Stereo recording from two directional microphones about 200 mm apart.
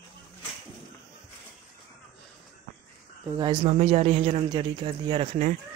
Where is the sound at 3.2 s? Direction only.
20° right (ahead or behind).